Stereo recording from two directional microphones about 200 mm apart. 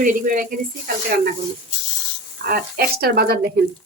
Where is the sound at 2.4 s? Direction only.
50° right (ahead or behind).